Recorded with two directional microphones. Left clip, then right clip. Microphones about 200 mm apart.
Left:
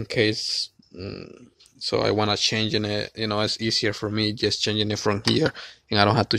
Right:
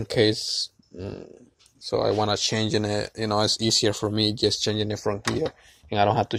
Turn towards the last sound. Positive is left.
turn(degrees=40)  # may be behind; listen again after turning